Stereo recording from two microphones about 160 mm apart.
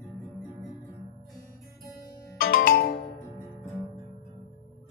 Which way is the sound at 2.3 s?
65° left (ahead or behind).